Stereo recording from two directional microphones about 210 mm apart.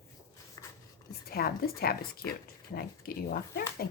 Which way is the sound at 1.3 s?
45° left (ahead or behind).